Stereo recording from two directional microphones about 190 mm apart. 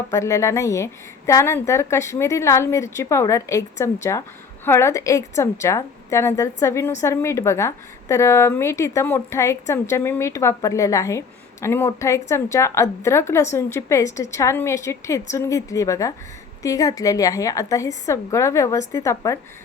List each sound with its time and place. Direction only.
0.1 s a woman's voice: 15° left (ahead or behind)